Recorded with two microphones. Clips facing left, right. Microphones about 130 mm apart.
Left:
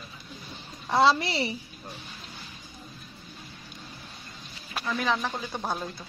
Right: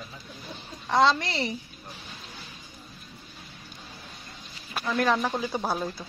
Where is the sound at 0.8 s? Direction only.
10° left (ahead or behind).